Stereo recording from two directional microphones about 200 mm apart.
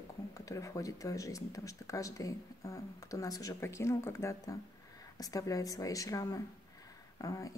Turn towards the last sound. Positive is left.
turn(degrees=15)  # may be behind; listen again after turning